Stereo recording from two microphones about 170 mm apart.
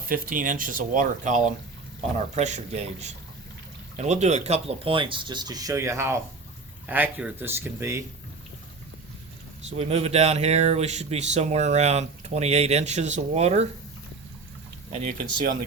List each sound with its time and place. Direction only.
0.1 s speech: 55° right (ahead or behind); by 8.0 s 15° right (ahead or behind)
9.6 s speech: 40° right (ahead or behind)